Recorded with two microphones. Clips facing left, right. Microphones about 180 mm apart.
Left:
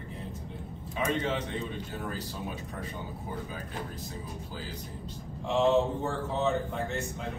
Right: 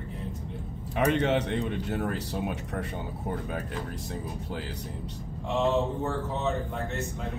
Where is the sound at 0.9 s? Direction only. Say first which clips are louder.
Right 6 dB; 65° right (ahead or behind).